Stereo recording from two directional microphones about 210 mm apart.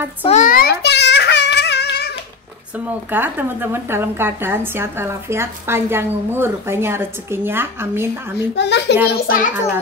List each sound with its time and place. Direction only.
0.2 s a sound: 35° left (ahead or behind); by 2.0 s 50° left (ahead or behind)
2.9 s speech: 10° right (ahead or behind)
8.5 s a child's voice: 55° left (ahead or behind)
9.1 s a child's voice: 45° left (ahead or behind)